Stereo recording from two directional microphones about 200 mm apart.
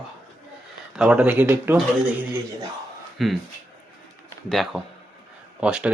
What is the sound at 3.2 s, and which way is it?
Speech, centre (ahead or behind).